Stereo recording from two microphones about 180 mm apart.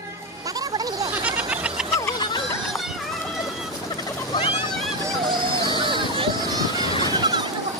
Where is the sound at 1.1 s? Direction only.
5° right (ahead or behind).